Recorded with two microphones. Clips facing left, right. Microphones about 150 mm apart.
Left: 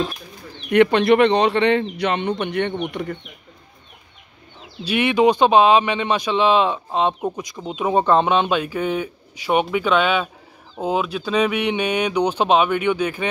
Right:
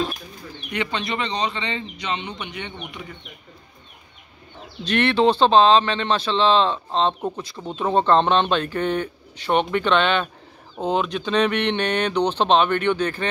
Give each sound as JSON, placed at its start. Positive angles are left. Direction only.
{"t": 0.7, "sound": "a man's voice", "side_deg": 60}
{"t": 4.8, "sound": "speech", "side_deg": 10}